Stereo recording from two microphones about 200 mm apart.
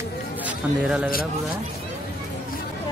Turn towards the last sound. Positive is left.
turn(degrees=-5)  # may be behind; listen again after turning